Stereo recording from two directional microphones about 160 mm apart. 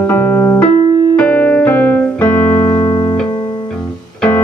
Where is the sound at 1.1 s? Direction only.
10° left (ahead or behind).